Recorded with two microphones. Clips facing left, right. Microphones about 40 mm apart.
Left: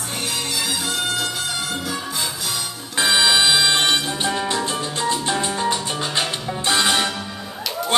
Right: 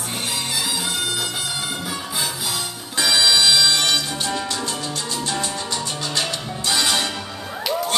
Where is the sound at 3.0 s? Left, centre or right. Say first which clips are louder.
Left 1 dB; left.